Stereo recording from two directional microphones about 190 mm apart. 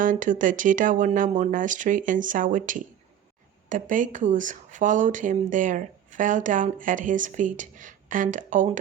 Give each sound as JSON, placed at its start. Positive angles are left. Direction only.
{"t": 0.0, "sound": "speech", "side_deg": -45}